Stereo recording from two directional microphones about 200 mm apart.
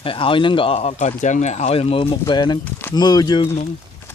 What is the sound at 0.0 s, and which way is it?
Speech, 25° left (ahead or behind).